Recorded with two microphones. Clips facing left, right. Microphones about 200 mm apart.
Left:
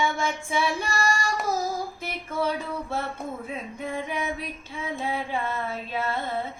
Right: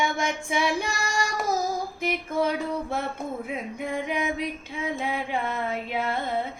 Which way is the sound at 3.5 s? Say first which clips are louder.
Right 2 dB; 15° right (ahead or behind).